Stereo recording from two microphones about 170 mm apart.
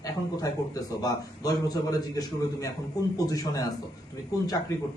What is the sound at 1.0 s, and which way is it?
A man's voice, 20° left (ahead or behind).